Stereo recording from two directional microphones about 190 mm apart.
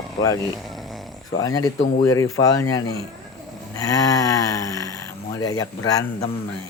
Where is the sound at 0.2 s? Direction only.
20° left (ahead or behind).